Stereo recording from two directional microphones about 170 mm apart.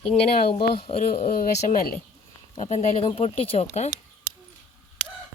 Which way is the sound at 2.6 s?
40° left (ahead or behind).